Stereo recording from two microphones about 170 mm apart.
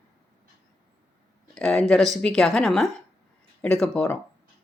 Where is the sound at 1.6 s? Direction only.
5° left (ahead or behind).